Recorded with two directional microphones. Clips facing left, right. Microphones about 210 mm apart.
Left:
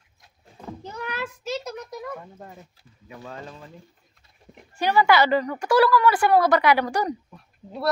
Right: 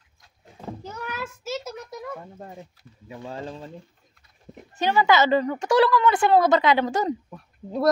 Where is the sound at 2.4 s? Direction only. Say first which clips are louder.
Right 3 dB; 25° right (ahead or behind).